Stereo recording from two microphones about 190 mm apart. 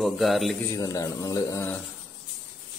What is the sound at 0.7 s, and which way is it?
Speech, 20° left (ahead or behind).